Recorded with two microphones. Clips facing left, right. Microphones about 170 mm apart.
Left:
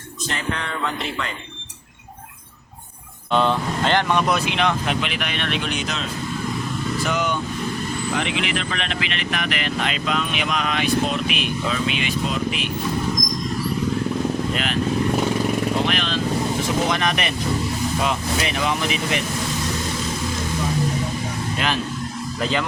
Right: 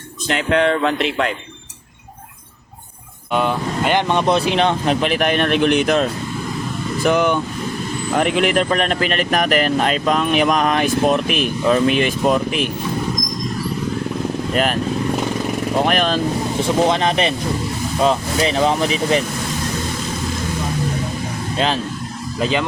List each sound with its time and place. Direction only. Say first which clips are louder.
0.3 s speech: right 11 dB; 75° right (ahead or behind)
3.3 s speech: right 1 dB; 10° right (ahead or behind)
4.1 s speech: right 4 dB; 30° right (ahead or behind); by 12.7 s 45° right (ahead or behind)
14.5 s speech: right 7 dB; 45° right (ahead or behind)
15.9 s speech: right 6 dB; 45° right (ahead or behind)
16.9 s speech: right 5 dB; 30° right (ahead or behind)
22.4 s speech: right 4 dB; 20° right (ahead or behind)